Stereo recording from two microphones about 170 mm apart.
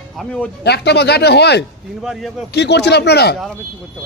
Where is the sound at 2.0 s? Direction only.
Centre (ahead or behind).